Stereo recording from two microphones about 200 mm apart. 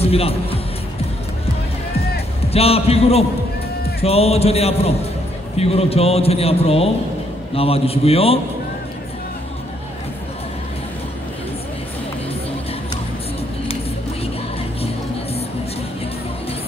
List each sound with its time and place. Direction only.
0.0 s speech: 30° left (ahead or behind)
2.4 s a man's voice: 30° left (ahead or behind)